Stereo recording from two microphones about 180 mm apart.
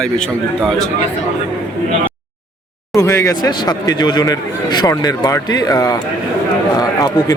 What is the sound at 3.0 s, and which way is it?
Speech, 20° left (ahead or behind).